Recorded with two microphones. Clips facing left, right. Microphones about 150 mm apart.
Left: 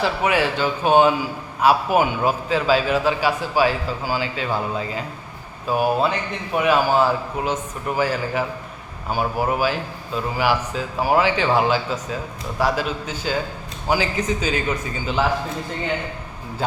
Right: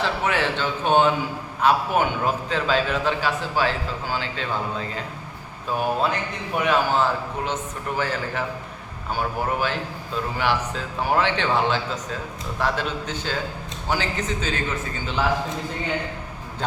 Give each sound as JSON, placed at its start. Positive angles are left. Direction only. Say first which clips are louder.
{"t": 0.0, "sound": "a man's voice", "louder": "left 3 dB", "side_deg": 10}
{"t": 12.5, "sound": "a man's voice", "louder": "left 3 dB", "side_deg": 10}